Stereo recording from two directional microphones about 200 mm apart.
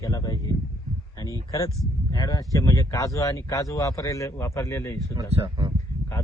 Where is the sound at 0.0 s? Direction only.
15° left (ahead or behind).